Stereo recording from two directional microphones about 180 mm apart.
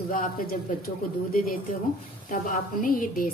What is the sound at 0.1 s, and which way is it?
A woman's voice, 55° left (ahead or behind).